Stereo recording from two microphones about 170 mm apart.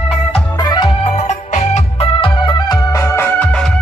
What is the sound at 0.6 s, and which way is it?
Music, 25° left (ahead or behind).